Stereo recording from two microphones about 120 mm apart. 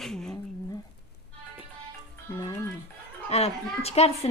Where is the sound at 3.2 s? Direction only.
55° left (ahead or behind).